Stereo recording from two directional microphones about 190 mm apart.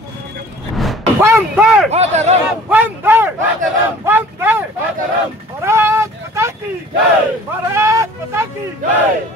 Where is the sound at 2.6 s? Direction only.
10° right (ahead or behind).